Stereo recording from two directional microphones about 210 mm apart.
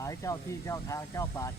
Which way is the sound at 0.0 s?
15° left (ahead or behind).